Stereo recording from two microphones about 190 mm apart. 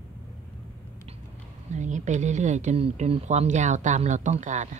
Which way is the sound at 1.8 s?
40° right (ahead or behind).